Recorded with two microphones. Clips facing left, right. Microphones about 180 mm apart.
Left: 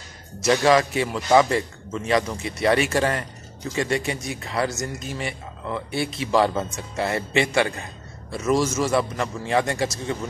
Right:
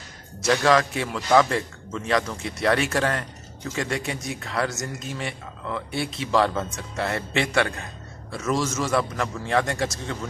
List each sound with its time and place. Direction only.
0.5 s a man's voice: 5° left (ahead or behind)